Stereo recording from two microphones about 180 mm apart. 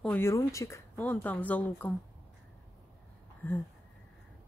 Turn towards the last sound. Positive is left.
turn(degrees=10)  # may be behind; listen again after turning